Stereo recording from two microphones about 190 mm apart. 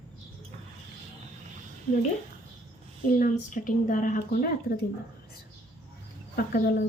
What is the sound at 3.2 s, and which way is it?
A woman's voice, 45° left (ahead or behind).